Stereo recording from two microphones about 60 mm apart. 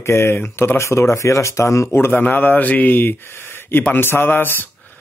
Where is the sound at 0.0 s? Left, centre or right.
Left.